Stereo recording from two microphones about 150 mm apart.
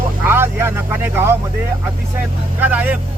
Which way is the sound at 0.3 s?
15° right (ahead or behind).